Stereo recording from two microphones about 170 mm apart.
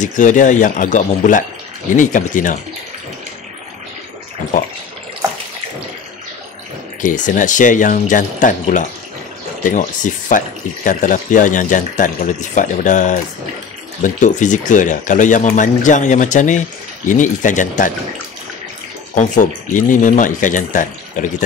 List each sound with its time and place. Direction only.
0.0 s speech: 50° left (ahead or behind)
7.0 s speech: 50° left (ahead or behind)
19.1 s speech: 45° left (ahead or behind)